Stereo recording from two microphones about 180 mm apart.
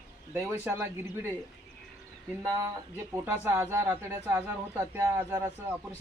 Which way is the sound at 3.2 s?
10° right (ahead or behind).